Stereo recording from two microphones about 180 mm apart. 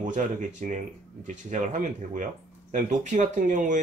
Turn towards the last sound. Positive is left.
turn(degrees=-45)  # may be behind; listen again after turning